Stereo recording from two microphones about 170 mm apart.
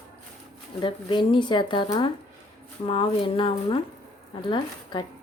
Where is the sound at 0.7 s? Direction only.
30° left (ahead or behind).